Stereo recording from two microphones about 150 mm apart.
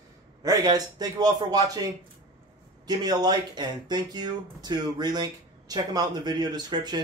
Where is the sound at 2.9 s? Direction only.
25° right (ahead or behind).